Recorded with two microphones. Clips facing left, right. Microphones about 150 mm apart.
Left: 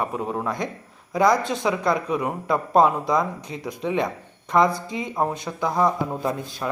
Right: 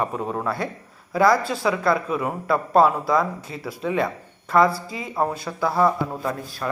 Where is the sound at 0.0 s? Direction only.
10° left (ahead or behind).